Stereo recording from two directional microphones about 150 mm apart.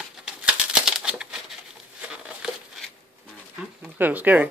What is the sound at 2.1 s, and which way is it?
Crumpling, 5° right (ahead or behind).